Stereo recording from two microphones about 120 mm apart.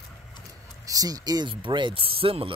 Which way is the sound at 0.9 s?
30° right (ahead or behind).